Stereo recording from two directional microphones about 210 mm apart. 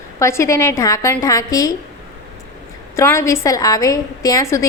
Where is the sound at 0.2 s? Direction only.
15° left (ahead or behind).